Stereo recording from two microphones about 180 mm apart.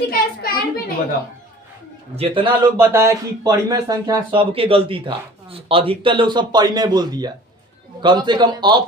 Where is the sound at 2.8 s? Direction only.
15° right (ahead or behind).